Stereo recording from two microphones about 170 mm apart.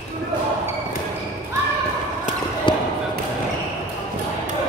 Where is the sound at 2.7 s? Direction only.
30° left (ahead or behind).